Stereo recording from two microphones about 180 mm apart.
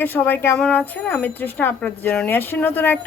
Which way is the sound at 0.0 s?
10° left (ahead or behind).